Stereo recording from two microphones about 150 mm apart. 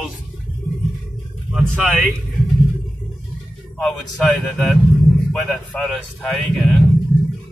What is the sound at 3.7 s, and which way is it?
Speech, 5° left (ahead or behind).